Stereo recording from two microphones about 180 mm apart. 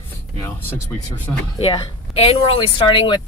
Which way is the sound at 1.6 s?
30° left (ahead or behind).